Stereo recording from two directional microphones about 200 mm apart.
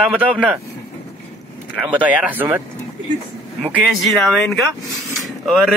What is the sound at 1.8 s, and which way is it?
Speech, 5° right (ahead or behind).